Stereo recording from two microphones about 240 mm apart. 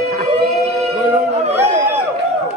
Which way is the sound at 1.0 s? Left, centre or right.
Right.